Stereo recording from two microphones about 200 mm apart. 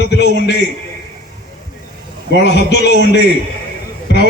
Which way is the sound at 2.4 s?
55° left (ahead or behind).